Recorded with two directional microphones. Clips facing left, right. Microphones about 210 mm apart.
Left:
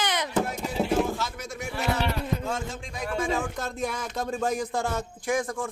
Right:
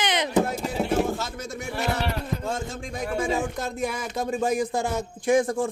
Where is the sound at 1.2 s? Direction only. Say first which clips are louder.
Right 1 dB; 25° right (ahead or behind).